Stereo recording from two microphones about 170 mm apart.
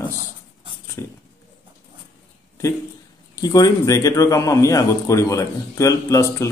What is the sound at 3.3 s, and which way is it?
A man's voice, 20° left (ahead or behind).